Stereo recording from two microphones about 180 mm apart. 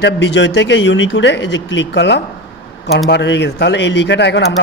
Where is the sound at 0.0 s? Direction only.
75° left (ahead or behind).